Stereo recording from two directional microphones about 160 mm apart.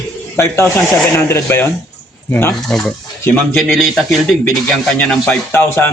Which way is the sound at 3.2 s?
15° left (ahead or behind).